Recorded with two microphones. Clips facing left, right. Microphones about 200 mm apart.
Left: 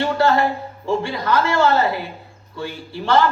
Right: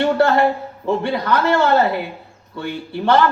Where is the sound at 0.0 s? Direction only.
60° right (ahead or behind).